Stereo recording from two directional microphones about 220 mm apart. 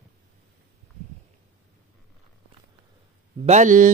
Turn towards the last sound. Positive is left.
turn(degrees=-35)  # may be behind; listen again after turning